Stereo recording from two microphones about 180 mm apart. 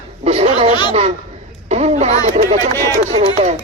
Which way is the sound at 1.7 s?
40° right (ahead or behind).